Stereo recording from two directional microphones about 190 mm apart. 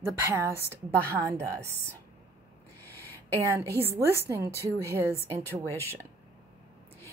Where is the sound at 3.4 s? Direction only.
15° right (ahead or behind).